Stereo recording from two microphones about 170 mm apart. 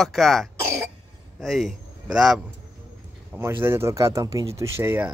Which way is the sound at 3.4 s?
15° right (ahead or behind).